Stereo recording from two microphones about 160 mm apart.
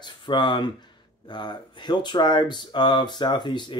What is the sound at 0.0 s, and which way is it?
Speech, 30° left (ahead or behind).